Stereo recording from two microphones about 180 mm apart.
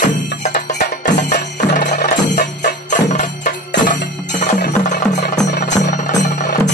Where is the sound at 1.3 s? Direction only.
70° left (ahead or behind).